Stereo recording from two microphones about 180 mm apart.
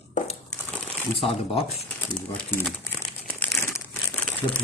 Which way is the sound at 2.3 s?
10° left (ahead or behind).